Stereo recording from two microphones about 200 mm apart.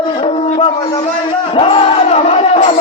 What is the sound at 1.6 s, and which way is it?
Music, 30° left (ahead or behind).